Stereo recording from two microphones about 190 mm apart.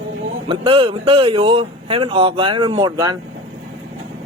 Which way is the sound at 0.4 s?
30° right (ahead or behind).